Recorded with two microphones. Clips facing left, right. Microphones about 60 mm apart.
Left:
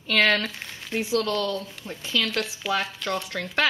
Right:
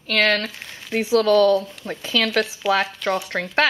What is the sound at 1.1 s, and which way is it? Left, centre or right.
Speech, right.